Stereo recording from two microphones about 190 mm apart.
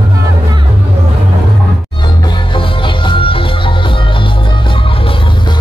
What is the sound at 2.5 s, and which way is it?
Music, 25° left (ahead or behind).